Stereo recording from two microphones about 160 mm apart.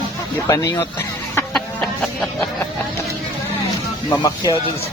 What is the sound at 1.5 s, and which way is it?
Chicken, 5° left (ahead or behind).